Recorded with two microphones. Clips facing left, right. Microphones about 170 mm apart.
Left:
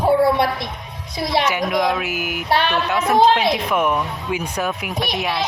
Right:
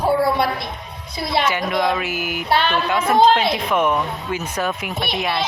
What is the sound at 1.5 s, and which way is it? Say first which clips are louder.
Speech: left 1 dB; centre (ahead or behind).